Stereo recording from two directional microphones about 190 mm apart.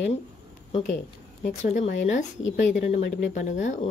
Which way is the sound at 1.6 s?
40° left (ahead or behind).